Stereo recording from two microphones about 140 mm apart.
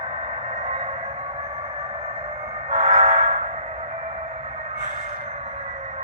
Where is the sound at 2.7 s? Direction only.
55° right (ahead or behind).